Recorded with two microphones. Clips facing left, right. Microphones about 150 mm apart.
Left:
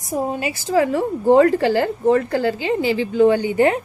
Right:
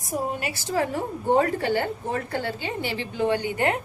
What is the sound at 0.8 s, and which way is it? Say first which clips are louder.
A woman's voice: left 8 dB; 90° left.